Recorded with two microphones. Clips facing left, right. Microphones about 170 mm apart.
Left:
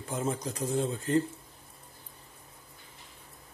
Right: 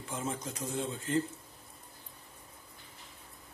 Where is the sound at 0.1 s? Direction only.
40° left (ahead or behind).